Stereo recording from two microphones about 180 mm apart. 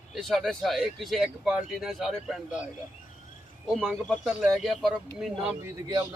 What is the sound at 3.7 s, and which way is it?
Speech, 5° left (ahead or behind).